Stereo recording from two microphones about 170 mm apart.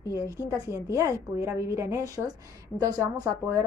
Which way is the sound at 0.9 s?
20° right (ahead or behind).